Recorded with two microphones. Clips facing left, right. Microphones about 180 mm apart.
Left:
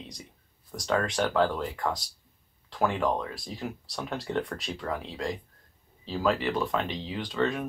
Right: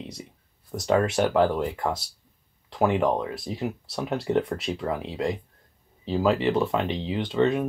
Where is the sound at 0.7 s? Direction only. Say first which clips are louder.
Right 5 dB; 10° right (ahead or behind).